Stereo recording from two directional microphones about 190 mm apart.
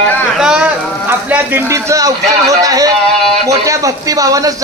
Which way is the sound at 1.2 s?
15° right (ahead or behind).